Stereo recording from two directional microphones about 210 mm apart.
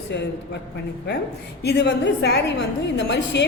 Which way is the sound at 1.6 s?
55° left (ahead or behind).